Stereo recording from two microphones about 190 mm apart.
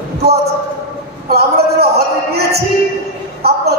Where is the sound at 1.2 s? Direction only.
55° right (ahead or behind).